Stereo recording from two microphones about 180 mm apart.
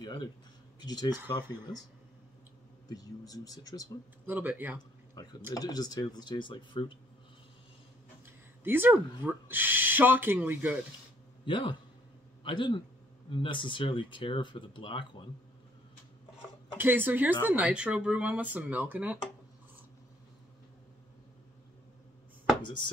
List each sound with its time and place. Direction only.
0.0 s speech: 25° left (ahead or behind)
2.9 s speech: 20° left (ahead or behind)
4.3 s speech: 10° right (ahead or behind)
5.1 s speech: 20° left (ahead or behind)
8.3 s speech: 10° right (ahead or behind)
11.4 s speech: 25° left (ahead or behind)
16.7 s speech: 10° right (ahead or behind)